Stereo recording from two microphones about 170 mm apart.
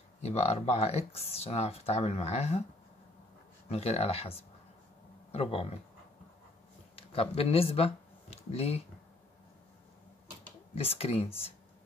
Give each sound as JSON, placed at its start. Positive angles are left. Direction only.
{"t": 0.2, "sound": "speech", "side_deg": 40}
{"t": 3.6, "sound": "speech", "side_deg": 40}
{"t": 7.0, "sound": "speech", "side_deg": 35}
{"t": 10.7, "sound": "speech", "side_deg": 35}